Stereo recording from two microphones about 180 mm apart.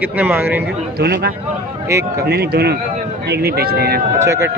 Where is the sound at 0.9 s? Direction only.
60° right (ahead or behind).